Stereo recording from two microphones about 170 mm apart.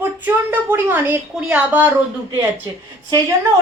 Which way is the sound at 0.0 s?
10° right (ahead or behind).